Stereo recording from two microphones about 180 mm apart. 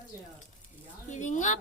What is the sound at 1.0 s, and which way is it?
Speech, 45° left (ahead or behind).